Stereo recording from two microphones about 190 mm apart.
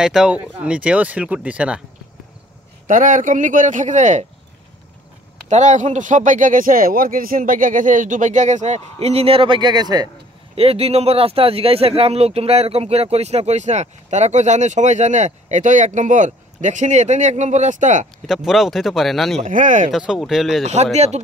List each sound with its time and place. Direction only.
0.0 s speech: 5° right (ahead or behind)
2.9 s speech: 45° right (ahead or behind)
5.5 s speech: 40° right (ahead or behind)
18.2 s speech: centre (ahead or behind)
19.4 s speech: 40° right (ahead or behind)
19.9 s speech: centre (ahead or behind)
20.6 s speech: 35° right (ahead or behind)